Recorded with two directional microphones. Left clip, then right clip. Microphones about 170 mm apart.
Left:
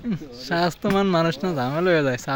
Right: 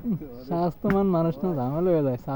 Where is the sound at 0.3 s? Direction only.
5° right (ahead or behind).